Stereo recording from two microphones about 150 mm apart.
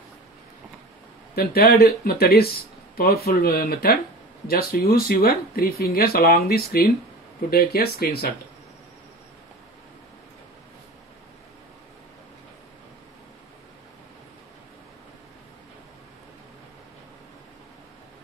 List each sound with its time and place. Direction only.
1.3 s speech: 90° left
3.3 s speech: 80° left